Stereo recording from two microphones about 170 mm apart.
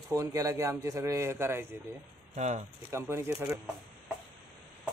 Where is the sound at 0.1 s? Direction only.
20° right (ahead or behind).